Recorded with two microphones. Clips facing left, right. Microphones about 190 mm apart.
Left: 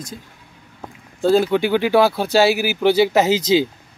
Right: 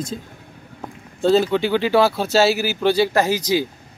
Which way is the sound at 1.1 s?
10° left (ahead or behind).